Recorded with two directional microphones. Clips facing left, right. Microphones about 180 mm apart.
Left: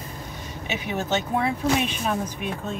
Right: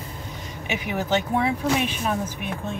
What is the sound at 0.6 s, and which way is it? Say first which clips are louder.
Speech: right 1 dB; 15° right (ahead or behind).